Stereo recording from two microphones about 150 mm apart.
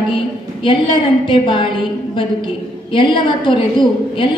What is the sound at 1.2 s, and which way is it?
A woman's voice, 30° left (ahead or behind).